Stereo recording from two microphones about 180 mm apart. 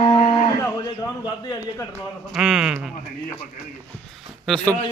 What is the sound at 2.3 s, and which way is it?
Speech, 5° right (ahead or behind).